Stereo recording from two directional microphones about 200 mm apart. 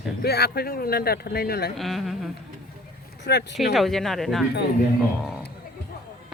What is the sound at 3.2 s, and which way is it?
Speech, 60° left (ahead or behind).